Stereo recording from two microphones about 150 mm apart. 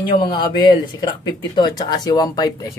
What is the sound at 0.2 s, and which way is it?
Speech, 30° left (ahead or behind).